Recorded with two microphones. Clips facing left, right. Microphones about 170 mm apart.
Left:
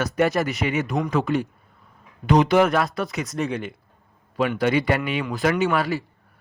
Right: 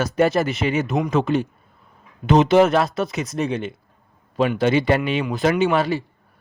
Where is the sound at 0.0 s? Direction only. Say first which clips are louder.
Right 3 dB; 30° right (ahead or behind).